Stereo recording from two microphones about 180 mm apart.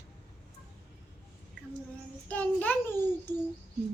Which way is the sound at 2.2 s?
10° left (ahead or behind).